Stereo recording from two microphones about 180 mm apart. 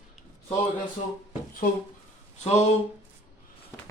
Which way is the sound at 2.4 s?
35° left (ahead or behind).